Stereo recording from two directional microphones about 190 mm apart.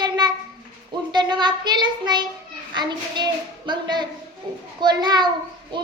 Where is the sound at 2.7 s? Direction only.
25° right (ahead or behind).